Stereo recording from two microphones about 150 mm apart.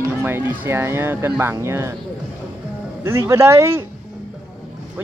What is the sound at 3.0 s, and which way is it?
Speech, 15° right (ahead or behind).